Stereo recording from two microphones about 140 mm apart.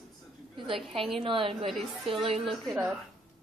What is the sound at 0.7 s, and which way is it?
A woman's voice, 40° right (ahead or behind).